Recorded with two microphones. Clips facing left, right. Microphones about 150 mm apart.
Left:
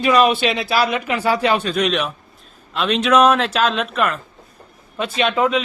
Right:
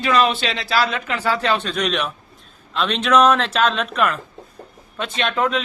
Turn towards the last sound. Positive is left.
turn(degrees=5)  # may be behind; listen again after turning